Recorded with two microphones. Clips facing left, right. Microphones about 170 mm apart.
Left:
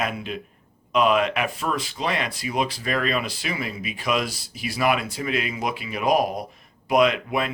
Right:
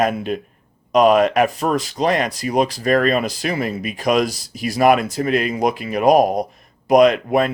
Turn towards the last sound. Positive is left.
turn(degrees=-45)  # may be behind; listen again after turning